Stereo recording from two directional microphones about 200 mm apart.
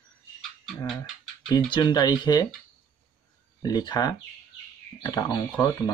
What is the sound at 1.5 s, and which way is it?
Speech, 20° left (ahead or behind).